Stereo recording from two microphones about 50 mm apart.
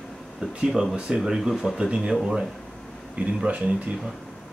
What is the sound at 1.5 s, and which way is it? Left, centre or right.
Speech, centre.